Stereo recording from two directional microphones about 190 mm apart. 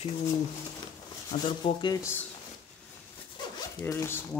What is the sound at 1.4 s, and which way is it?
Speech, 25° left (ahead or behind).